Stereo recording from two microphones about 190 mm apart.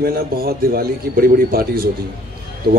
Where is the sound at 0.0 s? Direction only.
55° right (ahead or behind).